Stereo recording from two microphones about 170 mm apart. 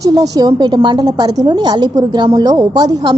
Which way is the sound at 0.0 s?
20° right (ahead or behind).